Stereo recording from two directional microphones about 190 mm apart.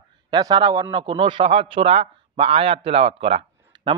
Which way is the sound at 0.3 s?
20° right (ahead or behind).